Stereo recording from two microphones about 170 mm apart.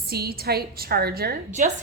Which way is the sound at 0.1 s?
65° right (ahead or behind).